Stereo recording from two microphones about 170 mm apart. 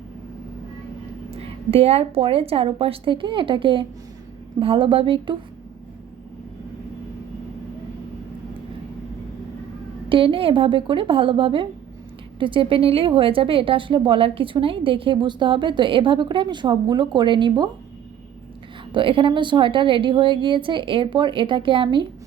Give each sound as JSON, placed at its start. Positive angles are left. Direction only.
{"t": 1.3, "sound": "a woman's voice", "side_deg": -35}
{"t": 10.1, "sound": "a woman's voice", "side_deg": -30}
{"t": 18.9, "sound": "a woman's voice", "side_deg": -30}